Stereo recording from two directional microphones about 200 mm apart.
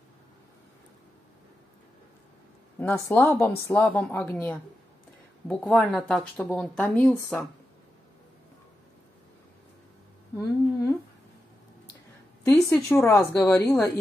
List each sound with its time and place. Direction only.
2.8 s speech: 5° left (ahead or behind)
10.3 s humming: 15° left (ahead or behind)
12.4 s a woman's voice: 15° left (ahead or behind)